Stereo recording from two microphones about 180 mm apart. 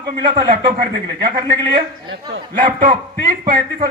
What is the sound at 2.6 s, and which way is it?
A man's voice, 50° right (ahead or behind).